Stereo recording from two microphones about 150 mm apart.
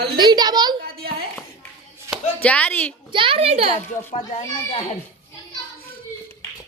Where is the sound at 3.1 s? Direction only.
35° right (ahead or behind).